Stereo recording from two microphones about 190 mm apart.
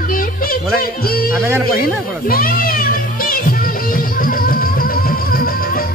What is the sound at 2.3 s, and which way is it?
Music, 50° left (ahead or behind).